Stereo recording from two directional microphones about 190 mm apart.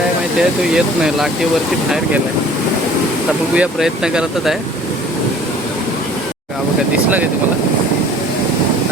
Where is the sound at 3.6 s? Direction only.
5° right (ahead or behind).